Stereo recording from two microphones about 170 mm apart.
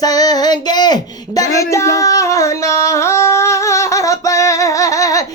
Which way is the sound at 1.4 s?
20° left (ahead or behind).